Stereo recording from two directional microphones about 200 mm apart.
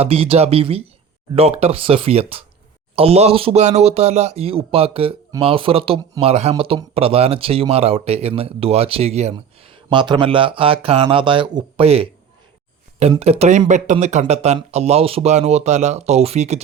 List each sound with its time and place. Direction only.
0.0 s speech: 30° right (ahead or behind)